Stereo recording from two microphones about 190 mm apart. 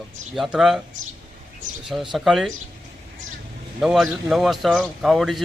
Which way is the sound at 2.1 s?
Centre (ahead or behind).